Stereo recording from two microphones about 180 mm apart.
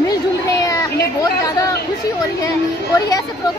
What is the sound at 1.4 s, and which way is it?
Chatter, 20° left (ahead or behind).